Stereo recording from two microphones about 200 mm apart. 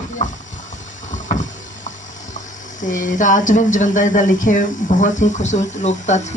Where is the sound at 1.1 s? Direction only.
40° left (ahead or behind).